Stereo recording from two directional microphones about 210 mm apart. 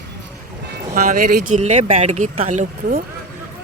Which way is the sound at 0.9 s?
40° right (ahead or behind).